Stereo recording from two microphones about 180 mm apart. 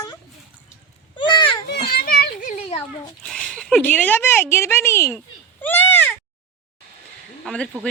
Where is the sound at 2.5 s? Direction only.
35° left (ahead or behind).